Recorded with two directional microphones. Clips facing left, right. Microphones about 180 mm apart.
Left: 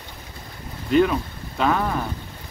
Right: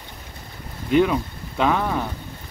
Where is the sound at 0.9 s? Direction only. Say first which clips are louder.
Even; 15° right (ahead or behind).